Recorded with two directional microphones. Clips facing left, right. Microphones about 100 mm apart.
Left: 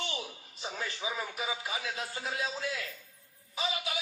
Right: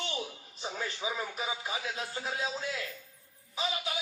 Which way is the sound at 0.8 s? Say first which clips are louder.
Right 1 dB; 25° right (ahead or behind).